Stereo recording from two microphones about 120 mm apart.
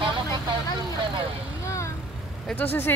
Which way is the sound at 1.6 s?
25° left (ahead or behind).